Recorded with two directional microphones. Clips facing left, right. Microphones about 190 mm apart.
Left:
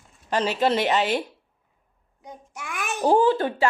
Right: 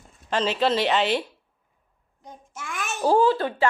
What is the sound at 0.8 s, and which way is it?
Speech, 45° left (ahead or behind).